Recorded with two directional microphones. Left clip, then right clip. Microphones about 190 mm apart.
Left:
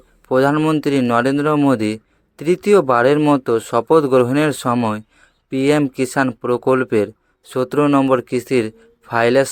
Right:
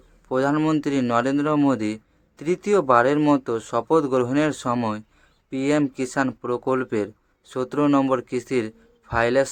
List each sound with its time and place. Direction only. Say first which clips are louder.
0.3 s a man's voice: left 6 dB; 35° left (ahead or behind)